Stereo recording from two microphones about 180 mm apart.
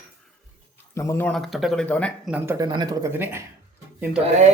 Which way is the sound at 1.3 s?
Centre (ahead or behind).